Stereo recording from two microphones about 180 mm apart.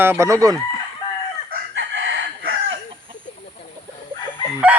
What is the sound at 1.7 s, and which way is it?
Chicken, 90° right.